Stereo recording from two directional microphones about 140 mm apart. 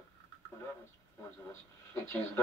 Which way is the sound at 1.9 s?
15° left (ahead or behind).